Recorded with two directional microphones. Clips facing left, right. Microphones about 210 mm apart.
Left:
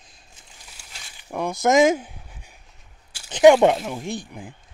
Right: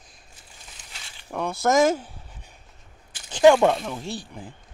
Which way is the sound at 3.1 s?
15° left (ahead or behind).